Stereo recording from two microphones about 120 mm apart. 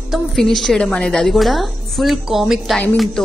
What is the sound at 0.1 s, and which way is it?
A woman's voice, centre (ahead or behind).